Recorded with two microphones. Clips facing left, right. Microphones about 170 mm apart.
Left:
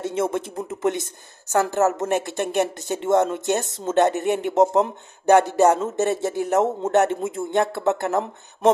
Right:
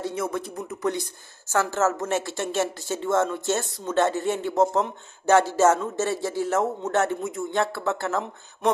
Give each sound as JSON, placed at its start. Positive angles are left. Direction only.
{"t": 0.0, "sound": "speech", "side_deg": 25}